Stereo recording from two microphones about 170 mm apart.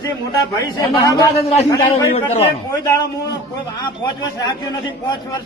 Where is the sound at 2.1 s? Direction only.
40° left (ahead or behind).